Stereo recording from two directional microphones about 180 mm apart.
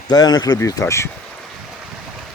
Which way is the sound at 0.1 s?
20° left (ahead or behind).